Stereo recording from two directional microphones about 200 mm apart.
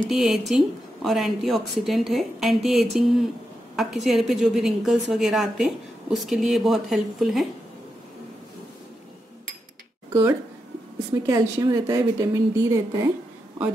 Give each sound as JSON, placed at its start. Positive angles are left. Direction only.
{"t": 0.1, "sound": "a woman's voice", "side_deg": 0}
{"t": 11.2, "sound": "a woman's voice", "side_deg": -15}